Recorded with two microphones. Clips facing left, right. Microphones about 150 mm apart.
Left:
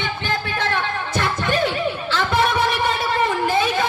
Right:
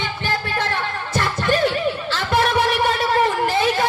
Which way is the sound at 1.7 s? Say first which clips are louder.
Right 1 dB; 50° left (ahead or behind).